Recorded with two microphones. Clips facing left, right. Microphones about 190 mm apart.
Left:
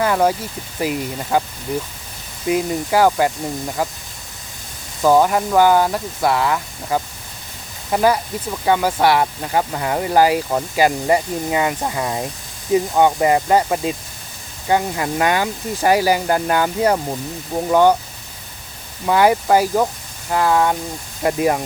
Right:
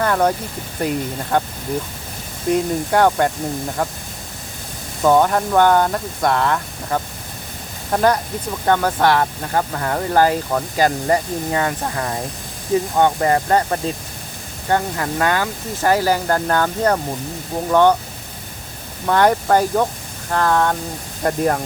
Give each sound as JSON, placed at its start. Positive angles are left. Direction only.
{"t": 0.0, "sound": "speech", "side_deg": 5}
{"t": 2.5, "sound": "speech", "side_deg": 5}
{"t": 5.0, "sound": "speech", "side_deg": 5}
{"t": 19.0, "sound": "speech", "side_deg": 10}